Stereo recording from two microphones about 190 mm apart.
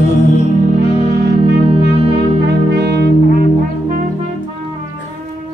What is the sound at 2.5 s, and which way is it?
Music, 60° right (ahead or behind).